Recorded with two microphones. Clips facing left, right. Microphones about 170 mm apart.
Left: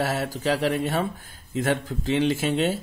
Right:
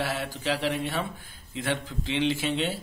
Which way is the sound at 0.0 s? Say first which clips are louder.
Left 5 dB; 45° left (ahead or behind).